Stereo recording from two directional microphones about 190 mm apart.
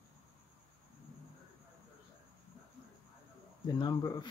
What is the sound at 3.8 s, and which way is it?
Speech, 25° left (ahead or behind).